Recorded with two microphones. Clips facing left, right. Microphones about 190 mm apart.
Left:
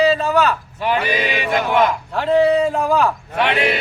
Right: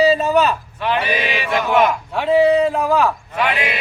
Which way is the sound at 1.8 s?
10° right (ahead or behind).